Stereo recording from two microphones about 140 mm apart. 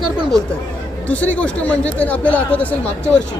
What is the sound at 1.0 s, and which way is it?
Speech, 10° left (ahead or behind).